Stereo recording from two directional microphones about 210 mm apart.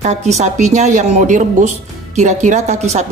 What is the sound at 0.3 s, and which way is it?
Speech, 35° right (ahead or behind).